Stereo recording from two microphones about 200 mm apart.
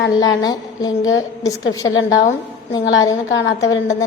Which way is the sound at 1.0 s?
80° left.